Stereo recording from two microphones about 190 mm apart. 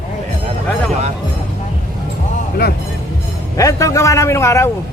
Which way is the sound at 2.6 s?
55° left (ahead or behind).